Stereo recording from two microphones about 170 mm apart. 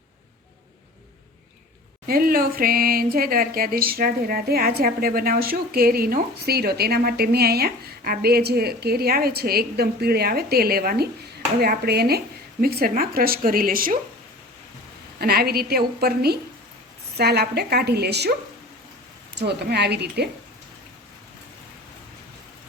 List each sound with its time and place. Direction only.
2.0 s a woman's voice: 60° right (ahead or behind)
15.2 s a woman's voice: 65° right (ahead or behind)
19.4 s a woman's voice: 75° right (ahead or behind)